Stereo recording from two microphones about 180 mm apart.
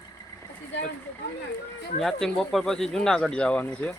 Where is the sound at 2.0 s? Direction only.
Centre (ahead or behind).